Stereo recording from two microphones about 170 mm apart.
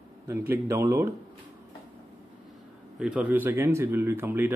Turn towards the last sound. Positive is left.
turn(degrees=-10)  # may be behind; listen again after turning